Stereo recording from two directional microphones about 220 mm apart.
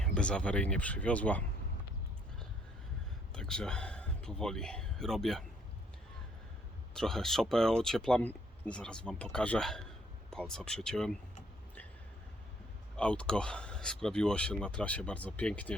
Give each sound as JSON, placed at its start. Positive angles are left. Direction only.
{"t": 0.0, "sound": "speech", "side_deg": 5}
{"t": 3.3, "sound": "speech", "side_deg": 5}
{"t": 6.9, "sound": "speech", "side_deg": 0}
{"t": 13.0, "sound": "speech", "side_deg": 5}